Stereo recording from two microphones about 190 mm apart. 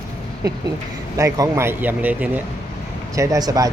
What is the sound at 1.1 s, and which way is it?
Speech, 15° right (ahead or behind).